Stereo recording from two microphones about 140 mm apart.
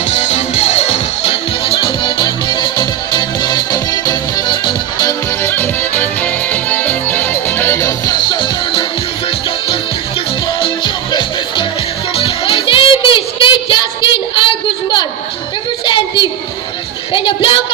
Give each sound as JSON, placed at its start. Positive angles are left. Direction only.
{"t": 0.1, "sound": "music", "side_deg": 50}
{"t": 5.4, "sound": "music", "side_deg": 15}
{"t": 8.2, "sound": "music", "side_deg": 35}
{"t": 12.2, "sound": "music", "side_deg": 40}
{"t": 14.3, "sound": "a sound", "side_deg": 35}